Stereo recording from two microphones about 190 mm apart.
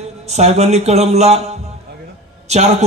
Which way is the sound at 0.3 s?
35° right (ahead or behind).